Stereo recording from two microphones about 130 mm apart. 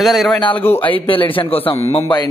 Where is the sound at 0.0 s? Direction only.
Centre (ahead or behind).